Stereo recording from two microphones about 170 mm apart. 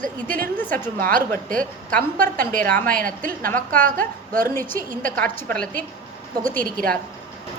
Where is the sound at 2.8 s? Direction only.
55° right (ahead or behind).